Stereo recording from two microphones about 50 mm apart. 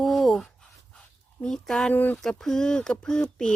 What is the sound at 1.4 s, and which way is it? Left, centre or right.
Speech, centre.